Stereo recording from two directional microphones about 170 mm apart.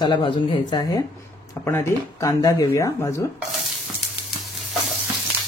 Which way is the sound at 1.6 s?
20° left (ahead or behind).